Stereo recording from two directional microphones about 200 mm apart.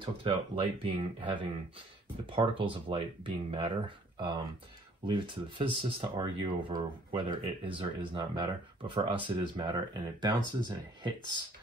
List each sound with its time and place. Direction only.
0.0 s speech: 25° right (ahead or behind)